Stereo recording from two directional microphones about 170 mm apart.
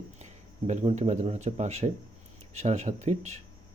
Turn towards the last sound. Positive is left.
turn(degrees=-40)  # may be behind; listen again after turning